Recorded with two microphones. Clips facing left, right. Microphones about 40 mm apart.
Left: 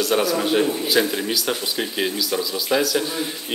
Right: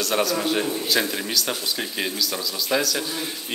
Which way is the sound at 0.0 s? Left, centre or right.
Centre.